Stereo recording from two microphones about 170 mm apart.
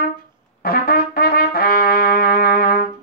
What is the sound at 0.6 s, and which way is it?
Trumpet, 60° left (ahead or behind).